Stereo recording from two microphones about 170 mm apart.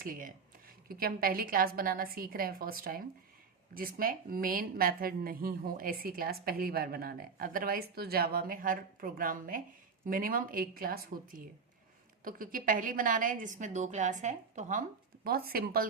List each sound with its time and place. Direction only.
0.0 s a woman's voice: 55° right (ahead or behind)